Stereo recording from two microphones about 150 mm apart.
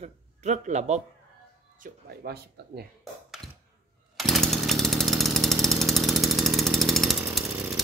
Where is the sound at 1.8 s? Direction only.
90° right.